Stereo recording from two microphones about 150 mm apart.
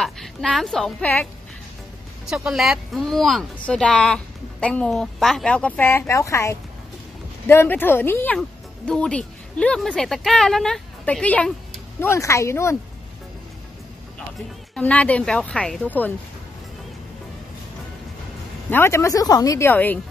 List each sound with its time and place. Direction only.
0.0 s a woman's voice: centre (ahead or behind)
2.2 s speech: 5° right (ahead or behind)
12.0 s speech: 20° left (ahead or behind)
14.8 s speech: 10° left (ahead or behind)
18.7 s speech: 15° left (ahead or behind)